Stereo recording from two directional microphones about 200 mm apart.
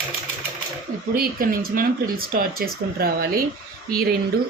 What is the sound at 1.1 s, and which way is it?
Speech, 45° right (ahead or behind).